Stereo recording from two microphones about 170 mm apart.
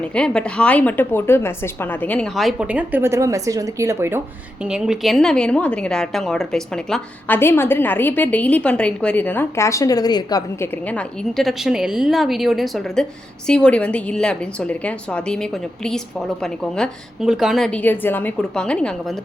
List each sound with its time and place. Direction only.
0.0 s a woman's voice: 5° left (ahead or behind); by 4.2 s 15° right (ahead or behind)
4.6 s a woman's voice: 5° right (ahead or behind); by 10.7 s 25° left (ahead or behind)
10.8 s a woman's voice: 5° left (ahead or behind)